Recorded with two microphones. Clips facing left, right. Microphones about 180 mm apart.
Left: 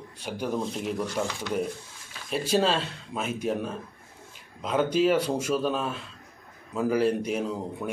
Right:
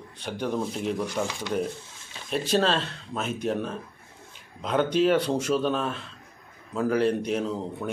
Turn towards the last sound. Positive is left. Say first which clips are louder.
# right 1 dB
turn(degrees=10)  # may be behind; listen again after turning